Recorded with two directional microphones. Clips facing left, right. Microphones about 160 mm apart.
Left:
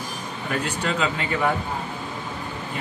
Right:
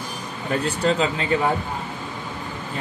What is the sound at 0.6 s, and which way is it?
Speech, 35° right (ahead or behind).